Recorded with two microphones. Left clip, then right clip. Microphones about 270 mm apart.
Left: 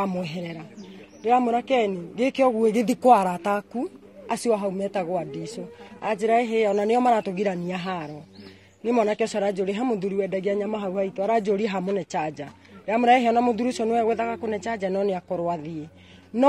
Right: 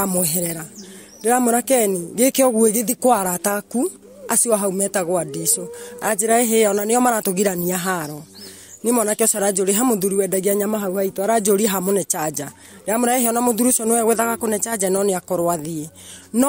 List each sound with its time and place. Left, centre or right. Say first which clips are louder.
0.0 s speech: right 6 dB; right